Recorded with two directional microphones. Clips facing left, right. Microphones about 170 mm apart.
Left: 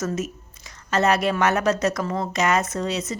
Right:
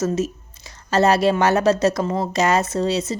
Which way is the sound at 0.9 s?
30° right (ahead or behind).